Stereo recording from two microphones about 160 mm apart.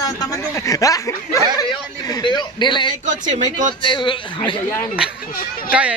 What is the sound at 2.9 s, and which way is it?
Speech, 50° right (ahead or behind).